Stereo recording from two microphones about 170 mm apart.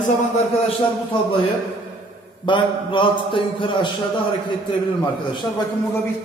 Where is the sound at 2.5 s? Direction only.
30° left (ahead or behind).